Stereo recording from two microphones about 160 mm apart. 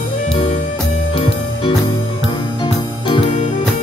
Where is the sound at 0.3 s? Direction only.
30° left (ahead or behind).